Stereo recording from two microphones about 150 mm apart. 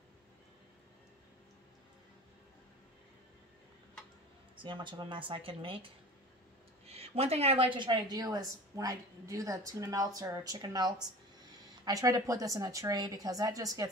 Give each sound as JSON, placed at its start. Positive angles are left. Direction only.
{"t": 4.6, "sound": "speech", "side_deg": -30}
{"t": 6.9, "sound": "a woman's voice", "side_deg": -45}